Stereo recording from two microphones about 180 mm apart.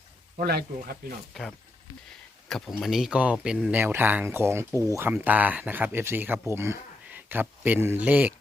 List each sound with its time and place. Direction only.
0.3 s speech: 60° right (ahead or behind)
1.3 s speech: centre (ahead or behind)